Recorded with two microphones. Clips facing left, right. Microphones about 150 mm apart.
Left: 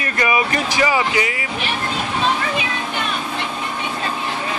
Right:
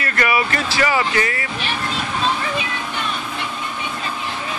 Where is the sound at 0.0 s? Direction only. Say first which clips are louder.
Left 1 dB; 20° left (ahead or behind).